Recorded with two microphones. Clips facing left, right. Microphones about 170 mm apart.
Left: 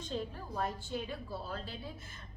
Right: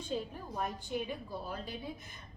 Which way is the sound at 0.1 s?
10° right (ahead or behind).